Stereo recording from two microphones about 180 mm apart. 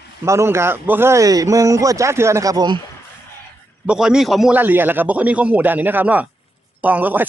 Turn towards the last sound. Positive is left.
turn(degrees=-10)  # may be behind; listen again after turning